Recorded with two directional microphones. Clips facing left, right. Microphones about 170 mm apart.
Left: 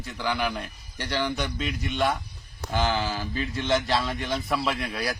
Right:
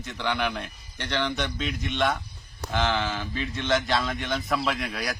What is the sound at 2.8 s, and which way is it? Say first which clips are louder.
Speech: even; 35° left (ahead or behind).